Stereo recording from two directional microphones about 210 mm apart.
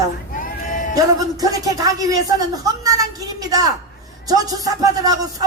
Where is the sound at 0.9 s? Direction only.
15° right (ahead or behind).